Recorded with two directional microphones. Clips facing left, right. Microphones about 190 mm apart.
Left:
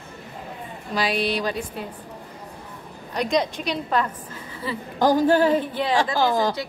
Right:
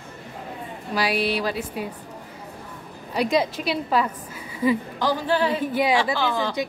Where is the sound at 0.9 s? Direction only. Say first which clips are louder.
Even; 10° right (ahead or behind).